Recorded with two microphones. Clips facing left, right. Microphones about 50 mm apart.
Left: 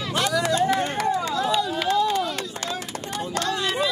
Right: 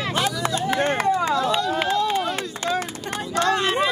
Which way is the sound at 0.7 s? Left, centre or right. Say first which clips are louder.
Right 3 dB; right.